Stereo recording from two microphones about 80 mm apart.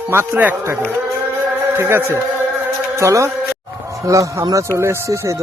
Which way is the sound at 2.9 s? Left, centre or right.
Right.